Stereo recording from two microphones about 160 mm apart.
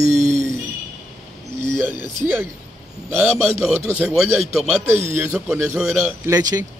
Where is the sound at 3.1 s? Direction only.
5° right (ahead or behind).